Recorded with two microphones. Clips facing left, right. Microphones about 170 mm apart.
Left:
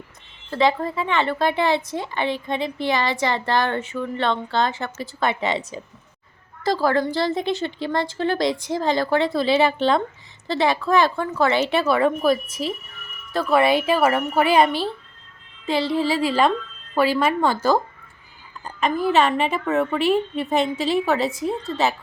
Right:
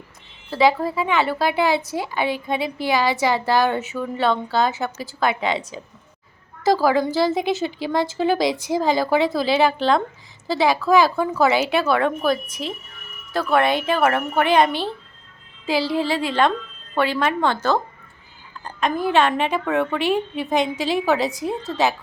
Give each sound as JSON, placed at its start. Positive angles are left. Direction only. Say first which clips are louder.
{"t": 0.5, "sound": "a woman's voice", "louder": "right 2 dB", "side_deg": -5}